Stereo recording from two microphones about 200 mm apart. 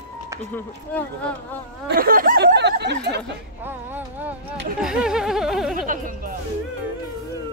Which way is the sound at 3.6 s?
10° right (ahead or behind).